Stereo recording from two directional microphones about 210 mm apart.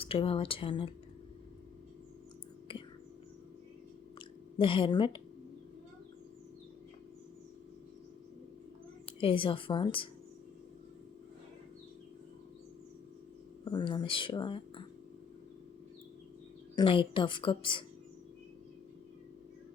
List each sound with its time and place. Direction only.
0.0 s speech: 25° left (ahead or behind)
4.5 s speech: 25° left (ahead or behind)
9.2 s speech: 25° left (ahead or behind)
13.7 s speech: 20° left (ahead or behind)
16.7 s speech: 25° left (ahead or behind)